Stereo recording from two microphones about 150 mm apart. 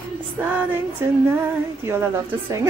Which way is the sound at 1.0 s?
20° right (ahead or behind).